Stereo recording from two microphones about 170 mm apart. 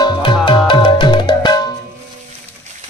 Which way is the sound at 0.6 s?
30° left (ahead or behind).